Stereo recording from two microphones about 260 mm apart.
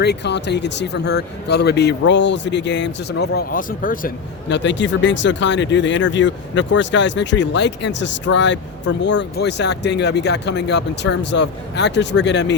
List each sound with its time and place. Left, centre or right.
0.0 s speech: left